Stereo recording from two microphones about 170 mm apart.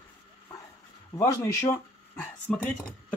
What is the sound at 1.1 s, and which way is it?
Speech, 15° left (ahead or behind).